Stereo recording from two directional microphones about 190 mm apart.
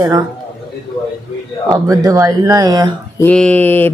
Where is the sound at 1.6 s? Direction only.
20° right (ahead or behind).